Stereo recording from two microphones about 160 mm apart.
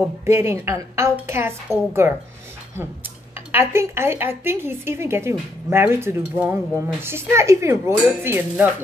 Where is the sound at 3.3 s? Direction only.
15° right (ahead or behind).